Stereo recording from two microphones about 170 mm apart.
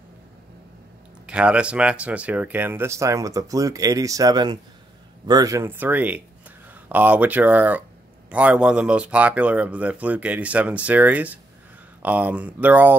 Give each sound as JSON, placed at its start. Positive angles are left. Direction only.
{"t": 1.2, "sound": "speech", "side_deg": -5}